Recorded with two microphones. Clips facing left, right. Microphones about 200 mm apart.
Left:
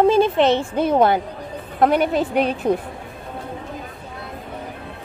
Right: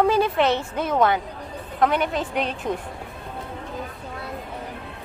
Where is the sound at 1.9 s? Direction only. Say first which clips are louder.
Left 6 dB; 5° left (ahead or behind).